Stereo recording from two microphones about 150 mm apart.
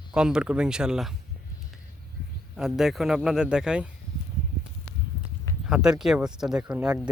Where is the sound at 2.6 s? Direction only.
Centre (ahead or behind).